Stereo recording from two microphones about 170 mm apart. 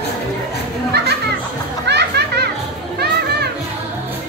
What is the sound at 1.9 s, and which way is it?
Children playing, 85° right.